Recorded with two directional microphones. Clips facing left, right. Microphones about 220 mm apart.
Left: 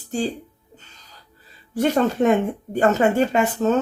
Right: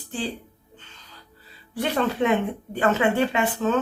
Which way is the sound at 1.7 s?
45° left (ahead or behind).